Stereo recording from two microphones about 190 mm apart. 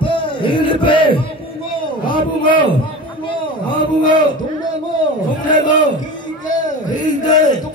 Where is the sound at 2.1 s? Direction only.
25° left (ahead or behind).